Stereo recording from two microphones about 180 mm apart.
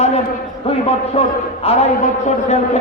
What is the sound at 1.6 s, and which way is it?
Speech, 35° left (ahead or behind).